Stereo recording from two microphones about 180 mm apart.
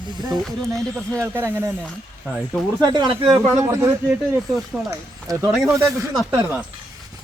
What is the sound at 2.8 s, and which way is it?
Speech, 25° right (ahead or behind).